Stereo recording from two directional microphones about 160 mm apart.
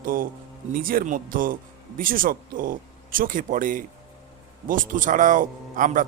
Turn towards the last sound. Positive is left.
turn(degrees=-55)  # may be behind; listen again after turning